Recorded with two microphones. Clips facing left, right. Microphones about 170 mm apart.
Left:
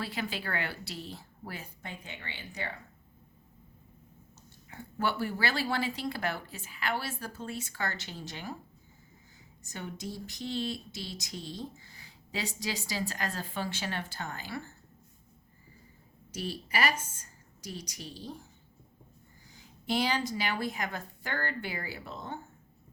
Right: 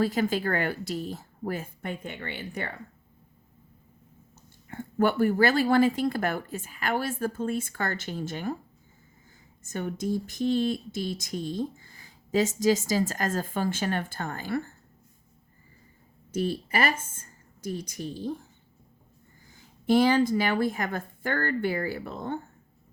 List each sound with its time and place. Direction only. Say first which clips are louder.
0.0 s speech: right 11 dB; 45° right (ahead or behind)
4.7 s speech: right 8 dB; 50° right (ahead or behind)
9.6 s speech: right 10 dB; 50° right (ahead or behind)
16.3 s a woman's voice: right 7 dB; 50° right (ahead or behind)
19.5 s speech: right 9 dB; 50° right (ahead or behind)